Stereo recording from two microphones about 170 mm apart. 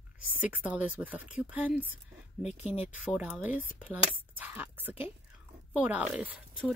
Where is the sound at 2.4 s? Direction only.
40° left (ahead or behind).